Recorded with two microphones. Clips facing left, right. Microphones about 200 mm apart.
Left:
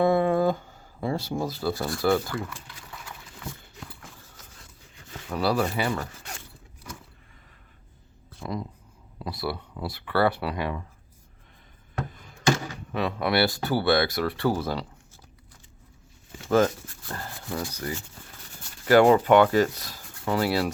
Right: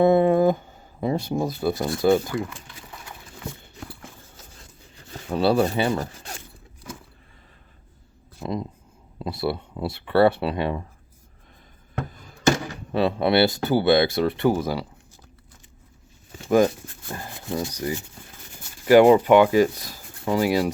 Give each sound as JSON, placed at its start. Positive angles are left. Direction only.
{"t": 0.0, "sound": "speech", "side_deg": -20}
{"t": 4.3, "sound": "a sound", "side_deg": -30}
{"t": 8.4, "sound": "a sound", "side_deg": -5}
{"t": 9.1, "sound": "speech", "side_deg": -25}
{"t": 12.9, "sound": "speech", "side_deg": -30}
{"t": 16.5, "sound": "speech", "side_deg": -15}